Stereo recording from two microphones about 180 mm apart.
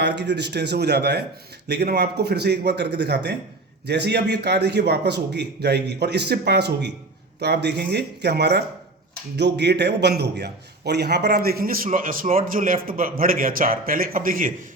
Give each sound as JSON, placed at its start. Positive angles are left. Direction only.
{"t": 0.0, "sound": "a man's voice", "side_deg": -70}